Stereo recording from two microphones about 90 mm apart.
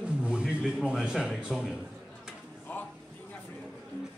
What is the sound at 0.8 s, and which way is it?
Speech, 10° right (ahead or behind).